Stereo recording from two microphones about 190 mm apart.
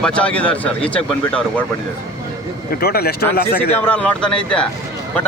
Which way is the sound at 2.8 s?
55° left (ahead or behind).